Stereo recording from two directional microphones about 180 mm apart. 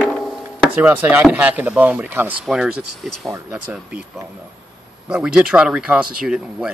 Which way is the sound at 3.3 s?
15° right (ahead or behind).